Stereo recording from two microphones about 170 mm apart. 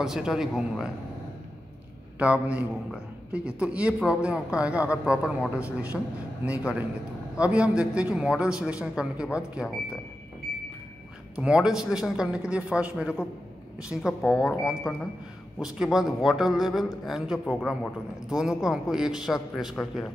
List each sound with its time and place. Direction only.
0.0 s a man's voice: 5° right (ahead or behind)
2.1 s a man's voice: 5° right (ahead or behind)
11.3 s a man's voice: 5° right (ahead or behind)